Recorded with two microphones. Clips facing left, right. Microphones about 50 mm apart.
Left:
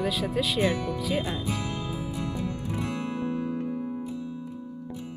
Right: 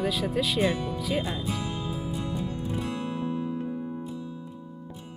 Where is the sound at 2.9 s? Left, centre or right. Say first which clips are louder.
Left 1 dB; left.